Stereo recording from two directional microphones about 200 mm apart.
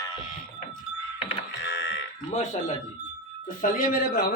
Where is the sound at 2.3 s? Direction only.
35° left (ahead or behind).